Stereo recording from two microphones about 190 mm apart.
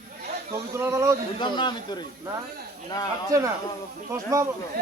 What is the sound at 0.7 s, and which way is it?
Speech, 15° right (ahead or behind).